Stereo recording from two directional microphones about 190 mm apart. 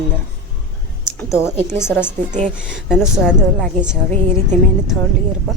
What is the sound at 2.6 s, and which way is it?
A woman's voice, 5° right (ahead or behind).